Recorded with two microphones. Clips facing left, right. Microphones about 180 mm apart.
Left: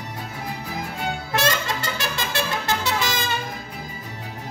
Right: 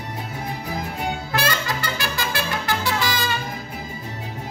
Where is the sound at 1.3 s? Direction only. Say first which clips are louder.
Left 2 dB; 25° left (ahead or behind).